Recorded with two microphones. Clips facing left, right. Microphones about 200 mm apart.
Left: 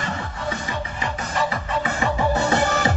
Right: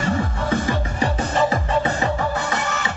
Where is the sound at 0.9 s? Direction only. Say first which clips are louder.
Right 5 dB; 30° right (ahead or behind).